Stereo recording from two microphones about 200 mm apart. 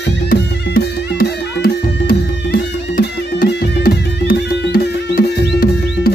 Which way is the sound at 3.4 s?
50° left (ahead or behind).